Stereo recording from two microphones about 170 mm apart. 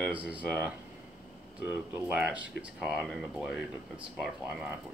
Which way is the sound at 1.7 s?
10° right (ahead or behind).